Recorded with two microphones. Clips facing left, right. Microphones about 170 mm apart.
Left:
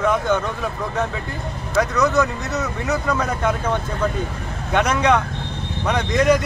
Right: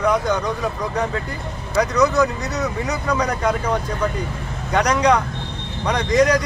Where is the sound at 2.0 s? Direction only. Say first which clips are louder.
Right 1 dB; 15° right (ahead or behind).